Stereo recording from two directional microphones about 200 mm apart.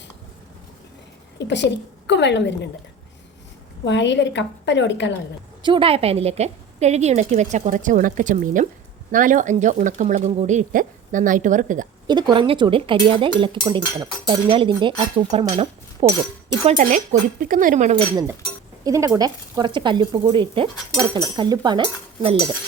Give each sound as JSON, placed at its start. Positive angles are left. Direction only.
{"t": 1.4, "sound": "a woman's voice", "side_deg": 60}
{"t": 3.8, "sound": "a woman's voice", "side_deg": 60}
{"t": 5.6, "sound": "a woman's voice", "side_deg": -25}
{"t": 12.0, "sound": "a woman's voice", "side_deg": -20}
{"t": 17.9, "sound": "speech", "side_deg": -20}